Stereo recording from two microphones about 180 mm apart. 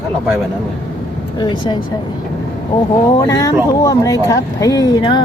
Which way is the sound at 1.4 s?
25° left (ahead or behind).